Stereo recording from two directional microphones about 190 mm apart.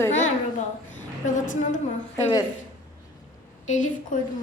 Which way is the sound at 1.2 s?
40° left (ahead or behind).